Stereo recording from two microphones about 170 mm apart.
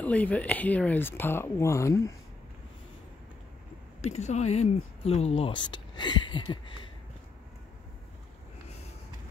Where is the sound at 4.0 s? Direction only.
40° left (ahead or behind).